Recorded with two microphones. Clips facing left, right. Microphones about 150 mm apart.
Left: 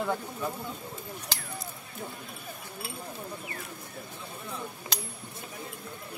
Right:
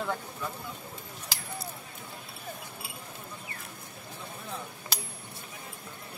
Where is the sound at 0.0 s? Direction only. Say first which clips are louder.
Left 3 dB; 20° left (ahead or behind).